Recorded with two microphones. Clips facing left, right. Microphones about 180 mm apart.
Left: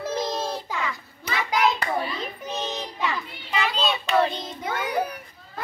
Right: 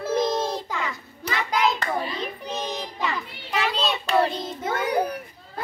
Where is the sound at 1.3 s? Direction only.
5° left (ahead or behind).